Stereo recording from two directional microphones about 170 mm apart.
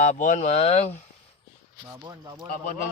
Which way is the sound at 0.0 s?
50° left (ahead or behind).